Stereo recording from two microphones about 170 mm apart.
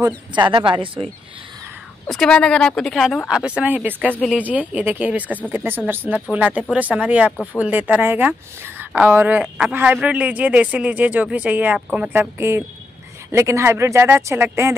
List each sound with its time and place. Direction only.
0.0 s speech: 25° right (ahead or behind)
2.0 s speech: 5° left (ahead or behind); by 14.8 s 15° right (ahead or behind)